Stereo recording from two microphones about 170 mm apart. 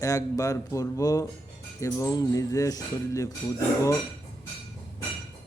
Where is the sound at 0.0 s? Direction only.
20° left (ahead or behind).